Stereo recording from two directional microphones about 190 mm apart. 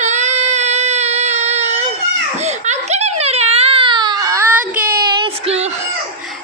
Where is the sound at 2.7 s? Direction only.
35° right (ahead or behind); by 4.9 s 10° right (ahead or behind).